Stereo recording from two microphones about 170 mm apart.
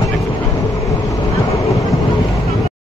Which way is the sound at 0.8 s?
20° left (ahead or behind).